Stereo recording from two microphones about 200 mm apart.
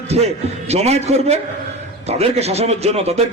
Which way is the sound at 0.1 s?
30° right (ahead or behind).